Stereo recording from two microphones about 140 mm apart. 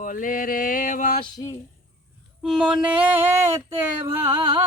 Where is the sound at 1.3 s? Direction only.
25° left (ahead or behind).